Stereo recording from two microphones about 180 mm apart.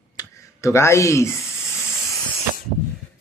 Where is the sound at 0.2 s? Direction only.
15° left (ahead or behind).